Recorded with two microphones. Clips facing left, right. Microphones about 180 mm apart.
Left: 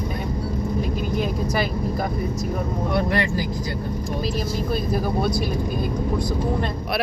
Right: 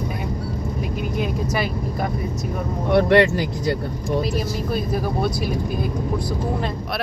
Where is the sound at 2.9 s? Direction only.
75° right (ahead or behind).